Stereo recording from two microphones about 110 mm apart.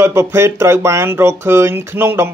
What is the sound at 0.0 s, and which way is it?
Speech, 25° right (ahead or behind).